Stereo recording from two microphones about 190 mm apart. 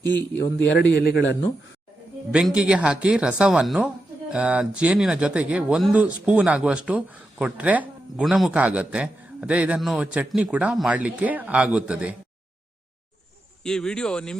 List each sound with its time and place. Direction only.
0.0 s a man's voice: 10° left (ahead or behind)
0.9 s a man's voice: 55° left (ahead or behind)
2.3 s speech: 5° right (ahead or behind)
13.7 s speech: 5° left (ahead or behind)